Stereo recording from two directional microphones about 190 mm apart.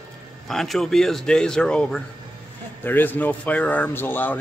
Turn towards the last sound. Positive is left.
turn(degrees=10)  # may be behind; listen again after turning